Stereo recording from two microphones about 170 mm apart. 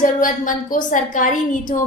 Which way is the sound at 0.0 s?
50° left (ahead or behind).